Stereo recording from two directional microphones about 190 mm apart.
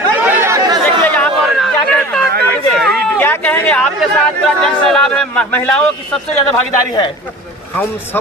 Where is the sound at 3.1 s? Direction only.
10° left (ahead or behind).